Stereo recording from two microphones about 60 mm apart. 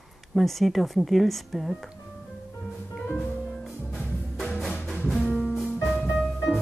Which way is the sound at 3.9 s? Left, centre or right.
Centre.